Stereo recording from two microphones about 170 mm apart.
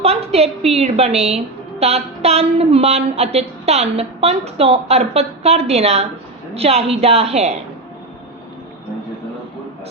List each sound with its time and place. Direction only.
0.0 s a woman's voice: 35° right (ahead or behind)